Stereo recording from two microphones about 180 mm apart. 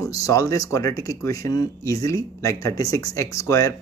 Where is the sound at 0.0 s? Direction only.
20° left (ahead or behind).